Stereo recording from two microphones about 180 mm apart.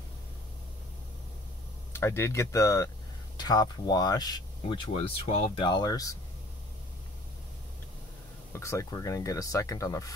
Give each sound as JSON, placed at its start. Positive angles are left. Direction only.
{"t": 1.9, "sound": "speech", "side_deg": 15}
{"t": 8.5, "sound": "speech", "side_deg": 15}